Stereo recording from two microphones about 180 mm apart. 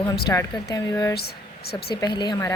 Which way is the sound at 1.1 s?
60° left (ahead or behind).